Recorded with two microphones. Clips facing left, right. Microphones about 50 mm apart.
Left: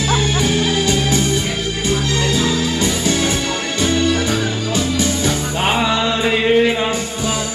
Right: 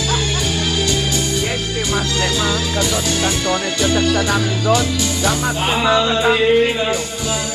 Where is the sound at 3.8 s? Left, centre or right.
Left.